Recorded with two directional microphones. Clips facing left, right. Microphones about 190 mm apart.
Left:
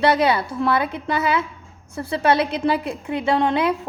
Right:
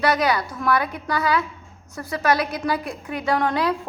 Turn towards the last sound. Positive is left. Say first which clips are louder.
# left 2 dB
turn(degrees=20)  # may be behind; listen again after turning